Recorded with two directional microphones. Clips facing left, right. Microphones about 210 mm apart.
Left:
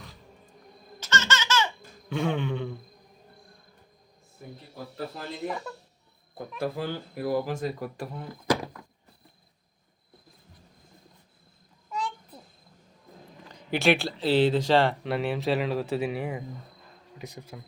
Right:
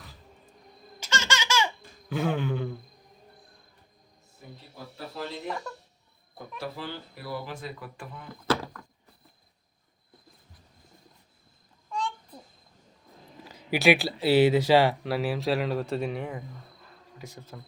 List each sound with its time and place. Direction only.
0.9 s laughter: 10° right (ahead or behind)
5.7 s speech: centre (ahead or behind)
6.6 s speech: 50° left (ahead or behind)
8.4 s speech: 15° left (ahead or behind)
11.9 s a sound: 5° left (ahead or behind)
13.4 s speech: 5° right (ahead or behind); by 17.6 s 15° left (ahead or behind)